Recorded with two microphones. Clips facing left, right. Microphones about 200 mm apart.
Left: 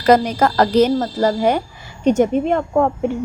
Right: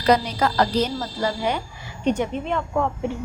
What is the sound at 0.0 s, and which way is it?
A woman's voice, 50° left (ahead or behind).